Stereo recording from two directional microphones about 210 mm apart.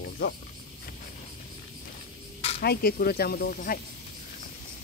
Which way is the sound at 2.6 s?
45° left (ahead or behind).